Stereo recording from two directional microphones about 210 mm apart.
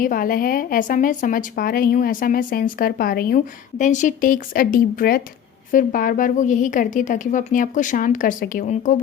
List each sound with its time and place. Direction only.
0.0 s a woman's voice: 40° left (ahead or behind)